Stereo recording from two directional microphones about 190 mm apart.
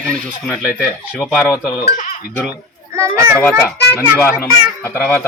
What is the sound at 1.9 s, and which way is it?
Speech, 40° left (ahead or behind).